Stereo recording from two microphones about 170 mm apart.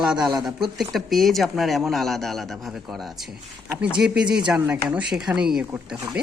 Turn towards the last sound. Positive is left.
turn(degrees=-5)  # may be behind; listen again after turning